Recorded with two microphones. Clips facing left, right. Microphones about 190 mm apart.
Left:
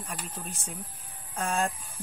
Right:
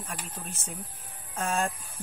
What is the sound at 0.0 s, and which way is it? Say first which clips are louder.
Speech: left 1 dB; centre (ahead or behind).